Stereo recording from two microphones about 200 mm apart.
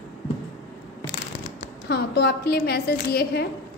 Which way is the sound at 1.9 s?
55° left (ahead or behind).